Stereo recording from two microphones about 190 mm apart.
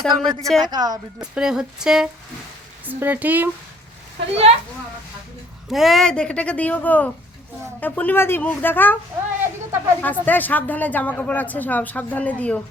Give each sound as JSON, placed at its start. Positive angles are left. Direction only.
{"t": 0.0, "sound": "speech", "side_deg": 0}
{"t": 0.7, "sound": "speech", "side_deg": -20}
{"t": 1.2, "sound": "speech", "side_deg": -5}
{"t": 5.6, "sound": "a woman's voice", "side_deg": 0}
{"t": 9.4, "sound": "a sound", "side_deg": -15}
{"t": 10.0, "sound": "a woman's voice", "side_deg": 10}